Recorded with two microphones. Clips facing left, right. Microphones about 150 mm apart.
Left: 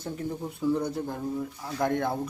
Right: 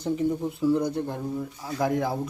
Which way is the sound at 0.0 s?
Centre (ahead or behind).